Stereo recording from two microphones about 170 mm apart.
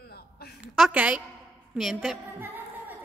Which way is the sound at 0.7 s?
5° right (ahead or behind).